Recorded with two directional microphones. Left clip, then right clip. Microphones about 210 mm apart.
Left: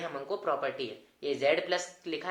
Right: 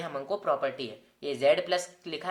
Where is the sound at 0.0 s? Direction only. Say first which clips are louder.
Right 2 dB; 35° right (ahead or behind).